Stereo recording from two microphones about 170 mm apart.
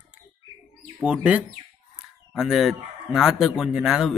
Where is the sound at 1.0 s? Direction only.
10° right (ahead or behind).